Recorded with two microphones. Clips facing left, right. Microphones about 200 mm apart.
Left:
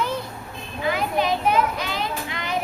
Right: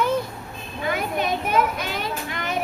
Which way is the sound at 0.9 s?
50° right (ahead or behind).